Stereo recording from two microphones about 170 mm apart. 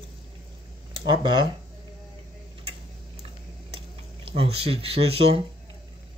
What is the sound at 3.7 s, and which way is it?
Speech, 35° right (ahead or behind).